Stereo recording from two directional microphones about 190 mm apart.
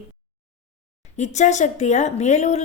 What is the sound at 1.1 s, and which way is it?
A woman's voice, 40° left (ahead or behind).